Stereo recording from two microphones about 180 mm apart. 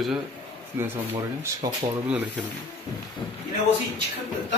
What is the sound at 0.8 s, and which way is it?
Speech, 10° right (ahead or behind).